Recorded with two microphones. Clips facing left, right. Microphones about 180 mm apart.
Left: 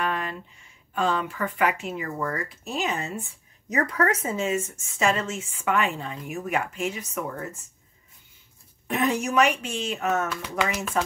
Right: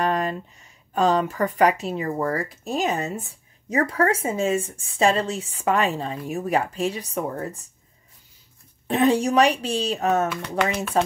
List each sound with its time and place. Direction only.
0.0 s speech: 40° right (ahead or behind)
8.8 s speech: 30° right (ahead or behind)